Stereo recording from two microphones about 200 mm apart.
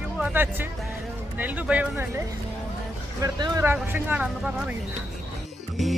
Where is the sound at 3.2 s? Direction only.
15° right (ahead or behind).